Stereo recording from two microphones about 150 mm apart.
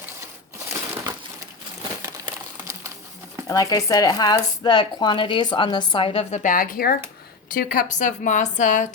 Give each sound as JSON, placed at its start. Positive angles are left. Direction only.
{"t": 0.7, "sound": "crushing", "side_deg": -20}
{"t": 3.4, "sound": "speech", "side_deg": 25}
{"t": 6.4, "sound": "speech", "side_deg": 65}